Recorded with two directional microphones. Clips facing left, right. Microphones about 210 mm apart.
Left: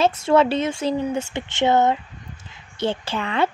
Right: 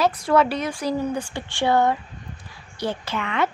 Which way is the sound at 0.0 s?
25° left (ahead or behind).